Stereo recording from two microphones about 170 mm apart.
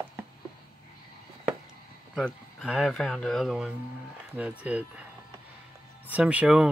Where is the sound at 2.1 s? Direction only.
Centre (ahead or behind).